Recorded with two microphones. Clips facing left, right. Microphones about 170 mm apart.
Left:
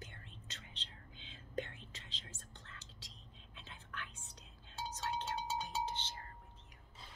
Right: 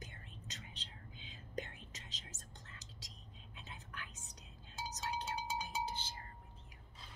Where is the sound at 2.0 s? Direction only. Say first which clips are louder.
Even; 40° right (ahead or behind).